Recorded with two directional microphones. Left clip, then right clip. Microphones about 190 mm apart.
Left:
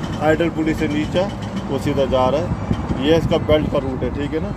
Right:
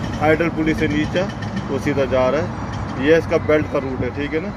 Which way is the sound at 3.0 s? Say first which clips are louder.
Right 1 dB; 15° left (ahead or behind).